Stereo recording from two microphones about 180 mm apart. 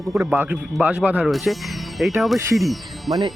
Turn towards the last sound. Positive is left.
turn(degrees=0)  # may be behind; listen again after turning